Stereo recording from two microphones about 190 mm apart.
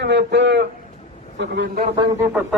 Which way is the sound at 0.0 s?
60° right (ahead or behind).